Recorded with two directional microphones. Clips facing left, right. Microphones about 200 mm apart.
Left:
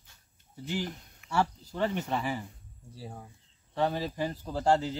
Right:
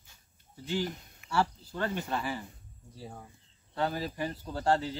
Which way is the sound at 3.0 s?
5° left (ahead or behind).